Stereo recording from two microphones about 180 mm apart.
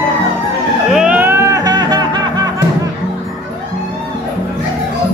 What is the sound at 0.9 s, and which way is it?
Music, 10° right (ahead or behind).